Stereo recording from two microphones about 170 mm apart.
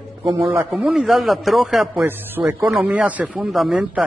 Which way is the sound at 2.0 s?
10° right (ahead or behind).